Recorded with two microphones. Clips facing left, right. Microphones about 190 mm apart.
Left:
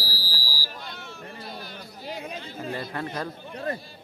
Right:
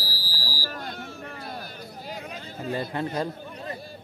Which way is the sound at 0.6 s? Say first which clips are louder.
Right 5 dB; 45° right (ahead or behind).